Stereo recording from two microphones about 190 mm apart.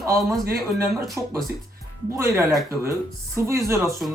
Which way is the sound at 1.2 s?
15° right (ahead or behind).